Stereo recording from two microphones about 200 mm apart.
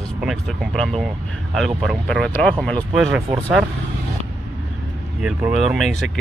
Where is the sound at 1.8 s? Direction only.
5° left (ahead or behind).